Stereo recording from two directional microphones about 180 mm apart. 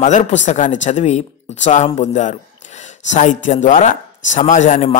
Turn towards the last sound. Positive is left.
turn(degrees=45)  # may be behind; listen again after turning